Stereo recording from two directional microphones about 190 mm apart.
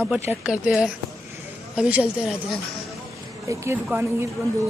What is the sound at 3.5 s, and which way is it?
A man's voice, 15° right (ahead or behind).